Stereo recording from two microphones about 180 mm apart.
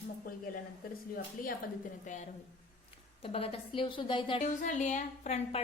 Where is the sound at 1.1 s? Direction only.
50° left (ahead or behind).